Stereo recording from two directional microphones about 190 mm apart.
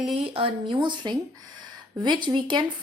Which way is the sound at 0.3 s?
30° right (ahead or behind).